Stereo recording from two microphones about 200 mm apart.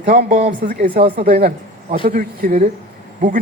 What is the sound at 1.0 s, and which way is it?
Speech, 30° right (ahead or behind).